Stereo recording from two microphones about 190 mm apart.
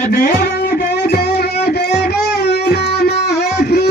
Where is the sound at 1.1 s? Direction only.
55° left (ahead or behind).